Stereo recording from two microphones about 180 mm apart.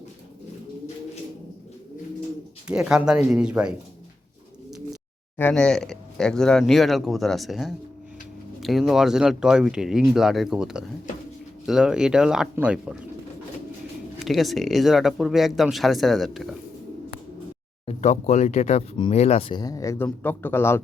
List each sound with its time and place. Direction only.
2.6 s speech: 5° right (ahead or behind)
5.4 s speech: 5° left (ahead or behind)
14.2 s speech: centre (ahead or behind)
17.8 s a man's voice: 40° left (ahead or behind); by 20.8 s 15° left (ahead or behind)